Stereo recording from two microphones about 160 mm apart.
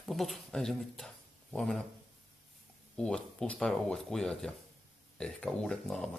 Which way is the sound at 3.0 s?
5° left (ahead or behind).